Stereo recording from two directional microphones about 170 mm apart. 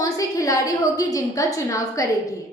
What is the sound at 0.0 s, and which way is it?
A woman's voice, 20° left (ahead or behind).